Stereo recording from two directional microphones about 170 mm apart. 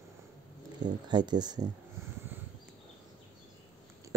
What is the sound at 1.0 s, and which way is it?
Speech, 25° right (ahead or behind).